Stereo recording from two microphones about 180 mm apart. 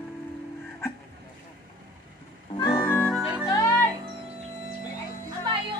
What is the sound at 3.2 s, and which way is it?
Music, 10° right (ahead or behind).